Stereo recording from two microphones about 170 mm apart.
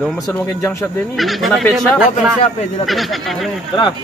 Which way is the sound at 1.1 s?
Centre (ahead or behind).